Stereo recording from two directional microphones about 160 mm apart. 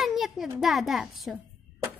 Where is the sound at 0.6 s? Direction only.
Centre (ahead or behind).